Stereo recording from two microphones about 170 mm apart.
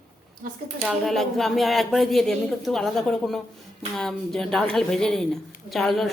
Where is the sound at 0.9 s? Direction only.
Centre (ahead or behind).